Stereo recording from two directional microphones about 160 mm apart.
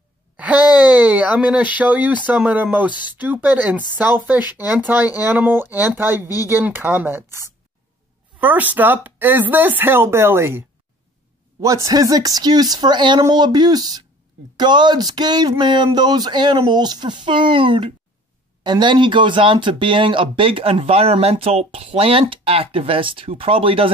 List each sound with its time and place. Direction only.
0.4 s speech: 10° right (ahead or behind)
11.6 s speech: 20° right (ahead or behind)